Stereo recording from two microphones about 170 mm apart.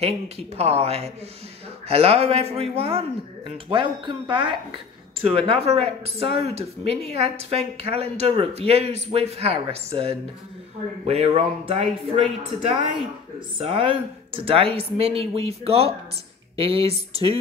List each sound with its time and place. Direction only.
0.0 s speech: 35° right (ahead or behind)
11.1 s speech: 35° right (ahead or behind)